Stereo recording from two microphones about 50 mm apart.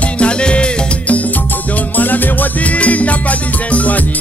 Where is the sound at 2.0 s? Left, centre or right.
Left.